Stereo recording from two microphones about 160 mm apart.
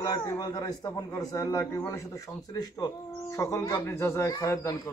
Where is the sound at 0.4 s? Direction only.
25° left (ahead or behind).